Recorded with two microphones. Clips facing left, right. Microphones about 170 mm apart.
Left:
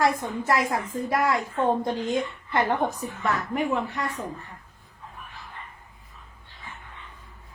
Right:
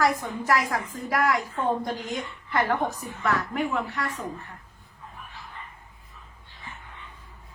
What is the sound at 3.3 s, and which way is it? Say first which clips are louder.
Speech: left 2 dB; 20° left (ahead or behind).